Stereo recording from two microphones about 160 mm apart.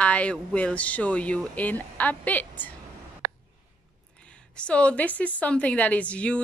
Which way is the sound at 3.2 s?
80° right.